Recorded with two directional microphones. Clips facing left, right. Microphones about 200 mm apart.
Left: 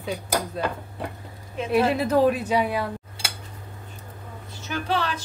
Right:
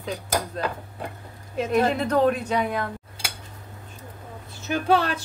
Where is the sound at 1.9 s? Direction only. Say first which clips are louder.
Left 1 dB; 5° left (ahead or behind).